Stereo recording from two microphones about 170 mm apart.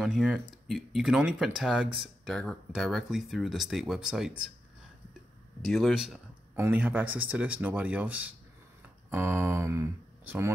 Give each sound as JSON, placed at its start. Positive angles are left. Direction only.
{"t": 0.0, "sound": "speech", "side_deg": 0}
{"t": 5.6, "sound": "speech", "side_deg": 0}
{"t": 6.5, "sound": "speech", "side_deg": -10}